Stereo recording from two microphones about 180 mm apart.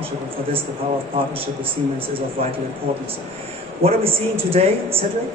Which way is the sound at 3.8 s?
35° right (ahead or behind).